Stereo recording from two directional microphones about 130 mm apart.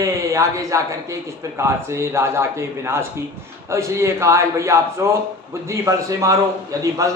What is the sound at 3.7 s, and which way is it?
A man's voice, 20° right (ahead or behind).